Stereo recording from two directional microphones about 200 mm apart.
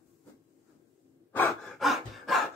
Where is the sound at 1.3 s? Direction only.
5° left (ahead or behind).